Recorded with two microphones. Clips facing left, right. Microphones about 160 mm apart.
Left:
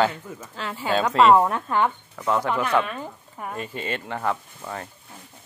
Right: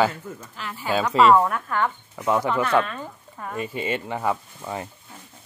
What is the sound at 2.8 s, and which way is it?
Speech, 15° left (ahead or behind).